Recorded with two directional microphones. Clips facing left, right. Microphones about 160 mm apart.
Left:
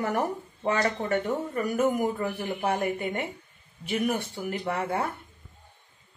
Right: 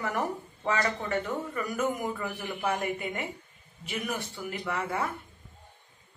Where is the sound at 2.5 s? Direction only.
30° left (ahead or behind).